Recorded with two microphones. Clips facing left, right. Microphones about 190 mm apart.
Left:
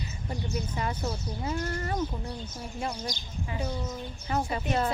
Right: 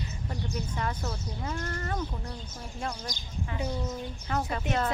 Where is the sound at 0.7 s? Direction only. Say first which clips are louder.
Left 2 dB; 15° left (ahead or behind).